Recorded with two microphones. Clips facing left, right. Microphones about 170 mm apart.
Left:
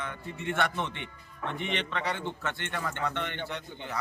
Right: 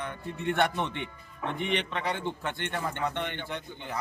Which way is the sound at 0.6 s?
15° right (ahead or behind).